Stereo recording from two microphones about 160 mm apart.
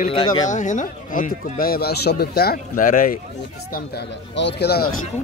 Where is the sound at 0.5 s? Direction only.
50° left (ahead or behind).